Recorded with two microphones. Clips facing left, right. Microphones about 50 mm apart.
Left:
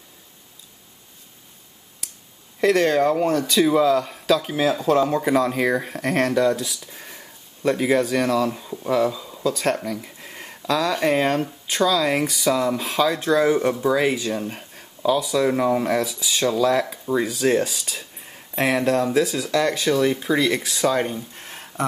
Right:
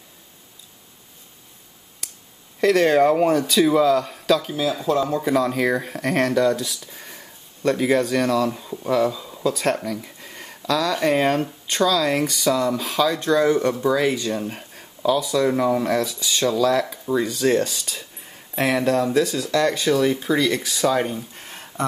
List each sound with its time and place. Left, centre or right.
2.6 s speech: centre
4.8 s speech: left
5.3 s speech: centre